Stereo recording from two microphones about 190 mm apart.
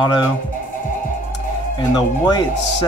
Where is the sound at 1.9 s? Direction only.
20° left (ahead or behind).